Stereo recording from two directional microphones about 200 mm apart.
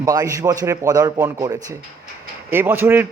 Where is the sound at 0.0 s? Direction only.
15° right (ahead or behind).